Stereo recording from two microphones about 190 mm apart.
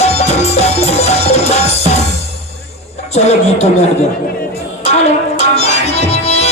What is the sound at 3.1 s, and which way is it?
Speech, 35° left (ahead or behind).